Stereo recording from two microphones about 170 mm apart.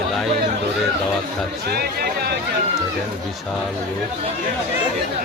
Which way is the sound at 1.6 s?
65° right (ahead or behind).